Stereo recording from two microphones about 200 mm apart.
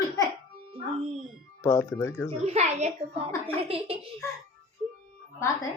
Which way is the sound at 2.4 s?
35° right (ahead or behind).